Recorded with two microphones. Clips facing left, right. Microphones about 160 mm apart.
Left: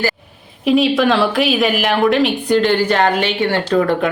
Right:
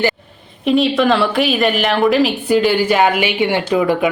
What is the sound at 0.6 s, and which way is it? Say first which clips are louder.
A woman's voice: even; centre (ahead or behind).